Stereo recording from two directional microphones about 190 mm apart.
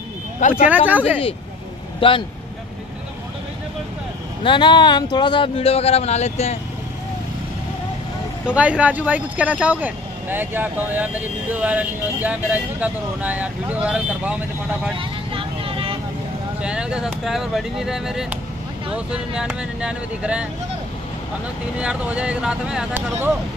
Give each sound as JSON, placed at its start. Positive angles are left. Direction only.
{"t": 0.4, "sound": "speech", "side_deg": 40}
{"t": 0.7, "sound": "speech", "side_deg": -10}
{"t": 2.0, "sound": "speech", "side_deg": 25}
{"t": 4.4, "sound": "speech", "side_deg": 25}
{"t": 8.5, "sound": "speech", "side_deg": -5}
{"t": 15.0, "sound": "vehicle", "side_deg": -30}
{"t": 16.6, "sound": "speech", "side_deg": -5}
{"t": 21.7, "sound": "speech", "side_deg": -5}